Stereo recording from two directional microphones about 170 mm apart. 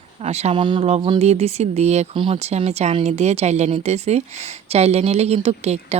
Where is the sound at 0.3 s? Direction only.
40° right (ahead or behind).